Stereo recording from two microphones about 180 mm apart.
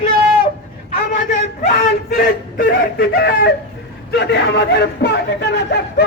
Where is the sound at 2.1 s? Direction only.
50° left (ahead or behind).